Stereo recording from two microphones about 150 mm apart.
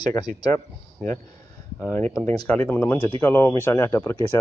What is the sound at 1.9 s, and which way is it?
Speech, 10° left (ahead or behind).